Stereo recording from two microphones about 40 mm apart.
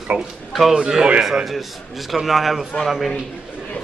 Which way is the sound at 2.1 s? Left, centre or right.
Centre.